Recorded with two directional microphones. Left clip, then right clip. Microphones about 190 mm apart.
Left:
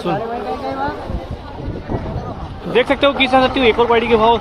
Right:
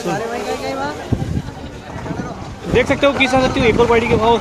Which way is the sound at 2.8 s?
5° right (ahead or behind).